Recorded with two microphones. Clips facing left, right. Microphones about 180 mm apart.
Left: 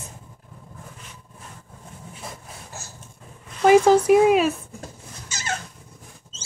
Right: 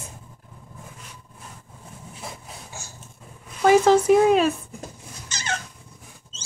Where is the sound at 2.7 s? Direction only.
Centre (ahead or behind).